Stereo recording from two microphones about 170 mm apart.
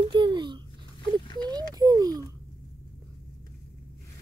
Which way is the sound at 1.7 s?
20° right (ahead or behind).